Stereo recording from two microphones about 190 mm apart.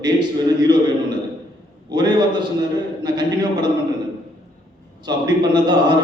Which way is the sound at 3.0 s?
20° right (ahead or behind).